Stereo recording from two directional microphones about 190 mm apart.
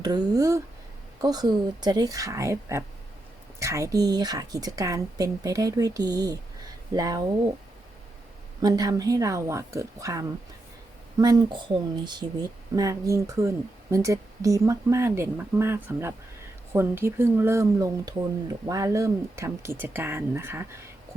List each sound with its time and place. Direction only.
0.0 s a woman's voice: 20° right (ahead or behind)
8.6 s a woman's voice: 20° right (ahead or behind)